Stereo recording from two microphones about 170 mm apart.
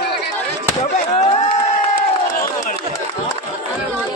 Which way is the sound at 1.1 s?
40° left (ahead or behind).